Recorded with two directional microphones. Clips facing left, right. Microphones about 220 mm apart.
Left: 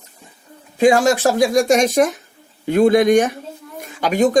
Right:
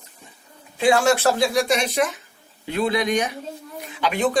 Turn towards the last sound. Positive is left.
turn(degrees=45)  # may be behind; listen again after turning